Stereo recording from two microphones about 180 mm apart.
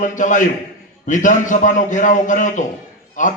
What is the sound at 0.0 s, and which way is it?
A man's voice, 45° left (ahead or behind).